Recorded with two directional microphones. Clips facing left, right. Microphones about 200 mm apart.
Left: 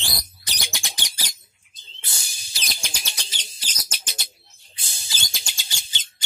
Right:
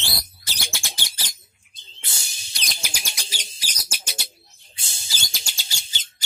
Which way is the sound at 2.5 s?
Centre (ahead or behind).